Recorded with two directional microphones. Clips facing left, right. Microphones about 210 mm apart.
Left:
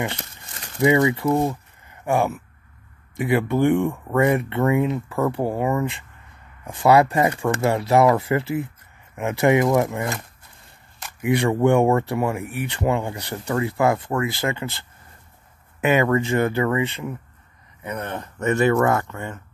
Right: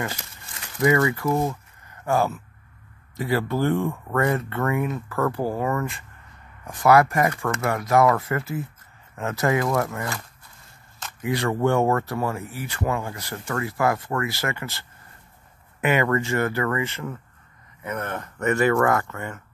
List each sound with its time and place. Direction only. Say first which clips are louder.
0.9 s speech: left 3 dB; 20° left (ahead or behind)
2.0 s speech: left 1 dB; 20° left (ahead or behind)
11.2 s speech: left 4 dB; 20° left (ahead or behind)
15.8 s speech: left 3 dB; 15° left (ahead or behind)